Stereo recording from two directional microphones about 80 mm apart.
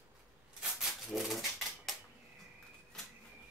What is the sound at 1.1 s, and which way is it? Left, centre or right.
Typewriter, centre.